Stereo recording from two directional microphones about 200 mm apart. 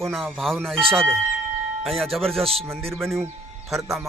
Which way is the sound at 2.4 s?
30° right (ahead or behind).